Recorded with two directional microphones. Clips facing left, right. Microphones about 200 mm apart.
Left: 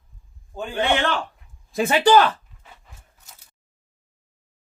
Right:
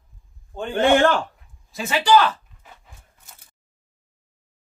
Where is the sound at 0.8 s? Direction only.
45° right (ahead or behind).